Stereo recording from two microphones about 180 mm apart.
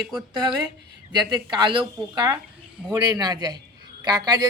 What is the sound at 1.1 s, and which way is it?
Speech, 25° right (ahead or behind).